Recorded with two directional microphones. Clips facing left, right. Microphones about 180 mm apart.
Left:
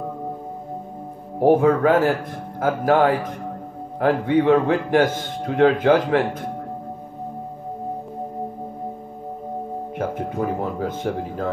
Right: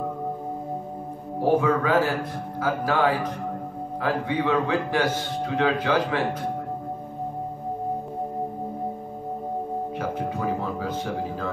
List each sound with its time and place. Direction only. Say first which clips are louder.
1.4 s a man's voice: left 6 dB; 45° left (ahead or behind)
10.6 s a man's voice: left 4 dB; 50° left (ahead or behind)